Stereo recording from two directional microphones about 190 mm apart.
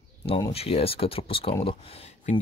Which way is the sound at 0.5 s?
30° left (ahead or behind).